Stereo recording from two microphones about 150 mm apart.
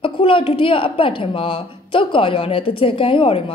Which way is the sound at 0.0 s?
35° left (ahead or behind).